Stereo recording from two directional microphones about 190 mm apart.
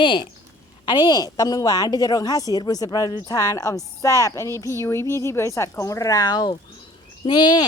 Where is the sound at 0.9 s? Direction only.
25° left (ahead or behind).